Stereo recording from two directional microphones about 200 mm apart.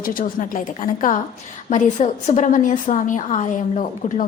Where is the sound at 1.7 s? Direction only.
35° left (ahead or behind).